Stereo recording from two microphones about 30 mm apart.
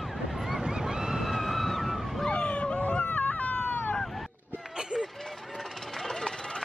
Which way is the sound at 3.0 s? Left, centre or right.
Left.